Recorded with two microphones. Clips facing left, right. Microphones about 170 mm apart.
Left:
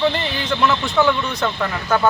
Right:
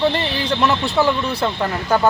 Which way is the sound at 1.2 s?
30° right (ahead or behind).